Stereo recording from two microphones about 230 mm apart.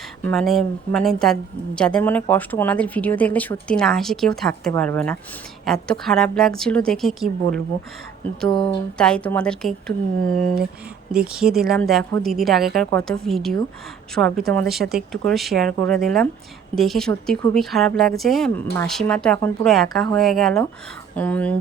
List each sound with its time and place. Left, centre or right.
0.3 s a woman's voice: centre
8.4 s speech: left
9.0 s a woman's voice: centre